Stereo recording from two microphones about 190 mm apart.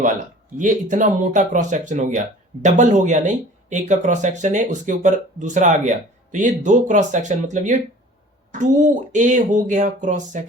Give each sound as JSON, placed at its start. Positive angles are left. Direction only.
{"t": 0.5, "sound": "speech", "side_deg": -40}